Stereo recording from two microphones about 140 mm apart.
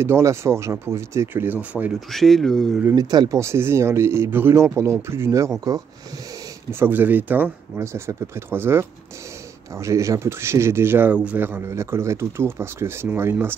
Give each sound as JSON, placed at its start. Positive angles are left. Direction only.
{"t": 0.0, "sound": "speech", "side_deg": -20}
{"t": 2.0, "sound": "speech", "side_deg": 0}
{"t": 2.8, "sound": "speech", "side_deg": -20}
{"t": 6.7, "sound": "speech", "side_deg": -15}